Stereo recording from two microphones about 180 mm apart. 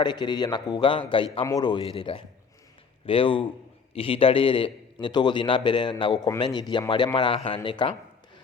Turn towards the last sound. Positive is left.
turn(degrees=25)  # may be behind; listen again after turning